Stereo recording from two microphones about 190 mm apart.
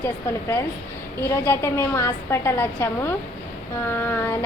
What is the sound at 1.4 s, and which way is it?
A woman's voice, 15° left (ahead or behind).